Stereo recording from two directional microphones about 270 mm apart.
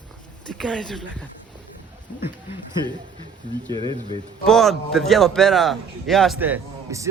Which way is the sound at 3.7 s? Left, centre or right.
Centre.